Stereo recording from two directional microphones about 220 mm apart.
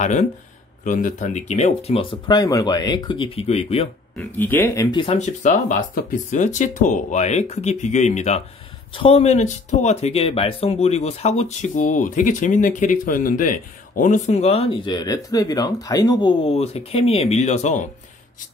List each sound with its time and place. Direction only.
0.0 s speech: 30° left (ahead or behind)
4.2 s speech: 10° left (ahead or behind); by 17.8 s 30° left (ahead or behind)